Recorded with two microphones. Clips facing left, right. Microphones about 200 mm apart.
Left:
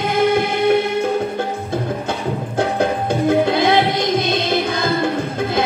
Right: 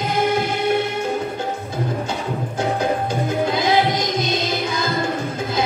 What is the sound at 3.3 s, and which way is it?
Music, 60° left (ahead or behind).